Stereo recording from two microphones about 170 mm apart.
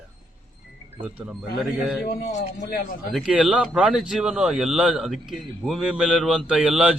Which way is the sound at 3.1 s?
Centre (ahead or behind).